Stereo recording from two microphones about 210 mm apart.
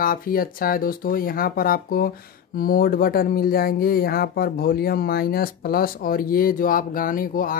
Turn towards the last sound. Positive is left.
turn(degrees=40)  # may be behind; listen again after turning